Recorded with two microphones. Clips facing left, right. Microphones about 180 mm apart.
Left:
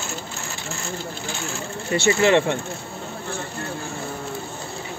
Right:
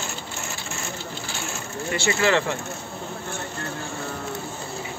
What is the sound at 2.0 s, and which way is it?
Speech, 20° left (ahead or behind).